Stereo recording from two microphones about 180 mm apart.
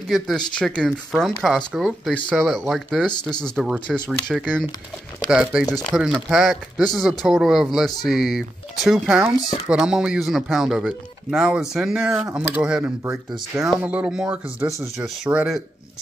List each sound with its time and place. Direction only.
0.6 s speech: 5° left (ahead or behind)
13.0 s speech: 15° right (ahead or behind)
13.6 s speech: 5° right (ahead or behind)